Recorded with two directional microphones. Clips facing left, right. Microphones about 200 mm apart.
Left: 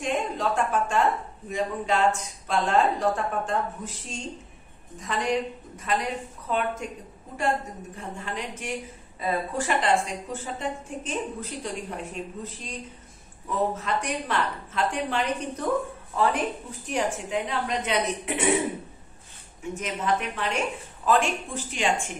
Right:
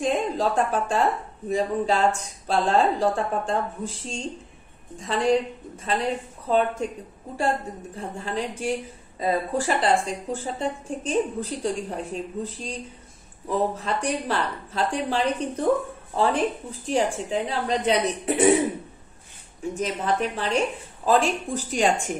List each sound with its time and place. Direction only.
0.0 s a woman's voice: 35° right (ahead or behind)
19.7 s a woman's voice: 35° right (ahead or behind)